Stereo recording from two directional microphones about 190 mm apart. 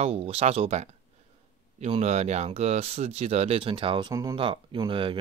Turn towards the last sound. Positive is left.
turn(degrees=-25)  # may be behind; listen again after turning